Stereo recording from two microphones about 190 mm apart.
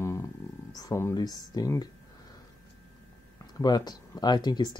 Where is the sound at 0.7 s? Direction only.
15° left (ahead or behind).